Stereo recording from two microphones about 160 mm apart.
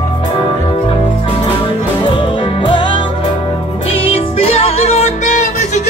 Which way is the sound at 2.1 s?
30° left (ahead or behind).